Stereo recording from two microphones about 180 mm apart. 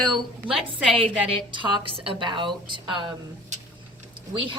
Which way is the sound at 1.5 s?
25° right (ahead or behind).